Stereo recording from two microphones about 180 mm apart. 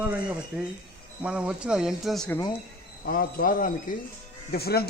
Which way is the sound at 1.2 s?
5° right (ahead or behind).